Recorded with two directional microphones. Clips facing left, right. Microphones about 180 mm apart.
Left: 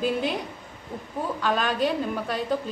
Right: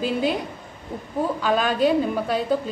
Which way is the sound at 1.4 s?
5° right (ahead or behind).